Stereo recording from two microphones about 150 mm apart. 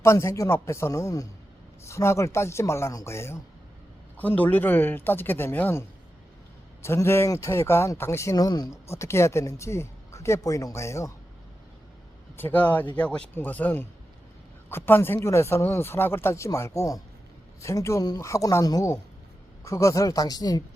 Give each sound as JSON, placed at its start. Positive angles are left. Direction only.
{"t": 0.0, "sound": "speech", "side_deg": 20}
{"t": 6.8, "sound": "speech", "side_deg": 15}
{"t": 12.4, "sound": "speech", "side_deg": 10}